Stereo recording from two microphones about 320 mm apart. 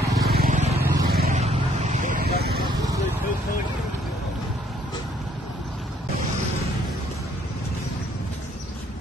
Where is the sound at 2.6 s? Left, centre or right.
Centre.